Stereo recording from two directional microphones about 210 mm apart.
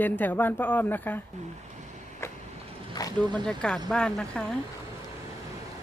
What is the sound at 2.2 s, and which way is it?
Vehicle, 15° left (ahead or behind).